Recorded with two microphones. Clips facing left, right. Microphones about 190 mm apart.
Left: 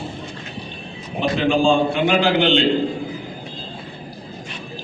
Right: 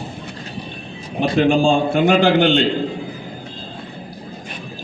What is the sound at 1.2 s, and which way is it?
A man's voice, 45° right (ahead or behind).